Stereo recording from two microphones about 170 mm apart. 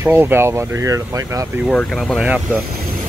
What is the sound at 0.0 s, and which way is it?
Speech, 10° right (ahead or behind).